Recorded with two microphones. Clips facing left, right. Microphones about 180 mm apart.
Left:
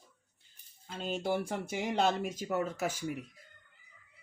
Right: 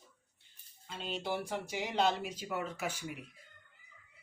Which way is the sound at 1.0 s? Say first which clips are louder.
Left 4 dB; 45° left (ahead or behind).